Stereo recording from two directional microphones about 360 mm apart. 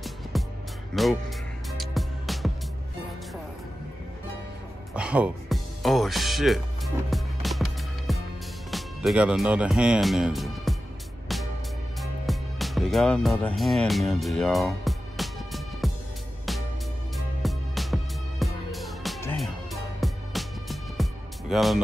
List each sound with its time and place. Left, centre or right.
0.3 s music: centre
1.0 s speech: centre
1.7 s music: centre
4.9 s music: centre
8.6 s speech: centre
12.0 s music: centre
17.4 s music: centre